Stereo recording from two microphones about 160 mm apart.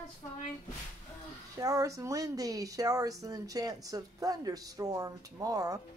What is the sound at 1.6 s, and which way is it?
A woman's voice, 20° right (ahead or behind).